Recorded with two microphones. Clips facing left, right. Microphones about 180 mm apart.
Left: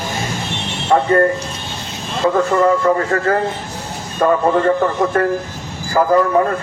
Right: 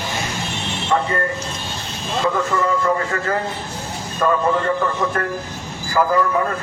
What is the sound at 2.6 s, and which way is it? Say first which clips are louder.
A man's voice: left 5 dB; 40° left (ahead or behind).